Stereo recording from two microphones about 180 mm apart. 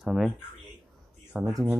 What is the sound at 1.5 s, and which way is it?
Speech, centre (ahead or behind).